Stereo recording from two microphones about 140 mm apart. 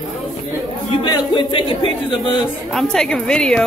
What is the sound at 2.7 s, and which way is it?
Speech, 5° left (ahead or behind).